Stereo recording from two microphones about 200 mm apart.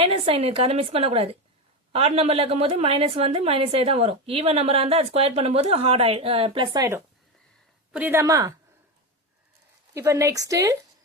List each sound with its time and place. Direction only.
0.0 s a woman's voice: 30° right (ahead or behind)
9.9 s a woman's voice: 15° right (ahead or behind)